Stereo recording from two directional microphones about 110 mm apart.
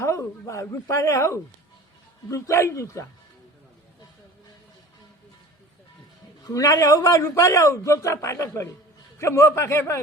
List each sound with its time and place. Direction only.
0.0 s a woman's voice: 30° left (ahead or behind)
6.4 s a man's voice: 35° left (ahead or behind)